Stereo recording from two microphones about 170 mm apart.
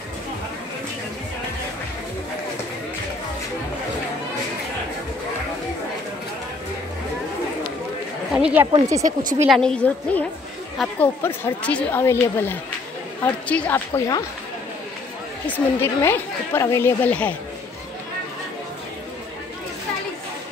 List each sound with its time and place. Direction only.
8.4 s a woman's voice: 5° right (ahead or behind)
8.7 s speech: 20° right (ahead or behind)
9.0 s speech: 50° right (ahead or behind)
9.5 s a woman's voice: 5° left (ahead or behind)
15.4 s a woman's voice: 10° left (ahead or behind)